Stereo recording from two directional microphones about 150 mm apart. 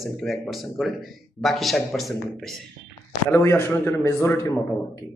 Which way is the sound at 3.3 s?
15° left (ahead or behind).